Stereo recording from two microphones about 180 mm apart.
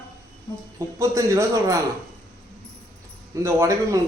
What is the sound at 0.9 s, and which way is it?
Speech, 15° right (ahead or behind).